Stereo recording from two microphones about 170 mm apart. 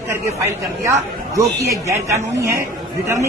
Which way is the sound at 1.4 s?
20° right (ahead or behind).